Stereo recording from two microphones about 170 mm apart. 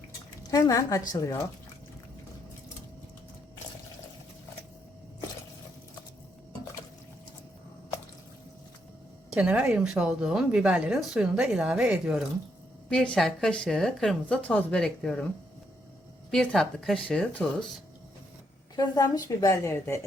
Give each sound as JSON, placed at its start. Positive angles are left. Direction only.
{"t": 0.5, "sound": "a woman's voice", "side_deg": 20}
{"t": 9.3, "sound": "a woman's voice", "side_deg": -10}
{"t": 12.9, "sound": "a woman's voice", "side_deg": 5}
{"t": 16.3, "sound": "a woman's voice", "side_deg": 5}
{"t": 18.8, "sound": "a woman's voice", "side_deg": 20}